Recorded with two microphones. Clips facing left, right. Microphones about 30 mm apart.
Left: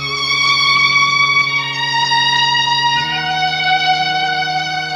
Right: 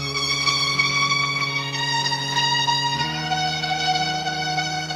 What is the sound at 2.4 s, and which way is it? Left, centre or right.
Music, left.